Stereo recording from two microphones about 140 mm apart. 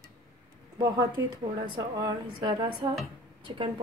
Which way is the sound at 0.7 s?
30° right (ahead or behind).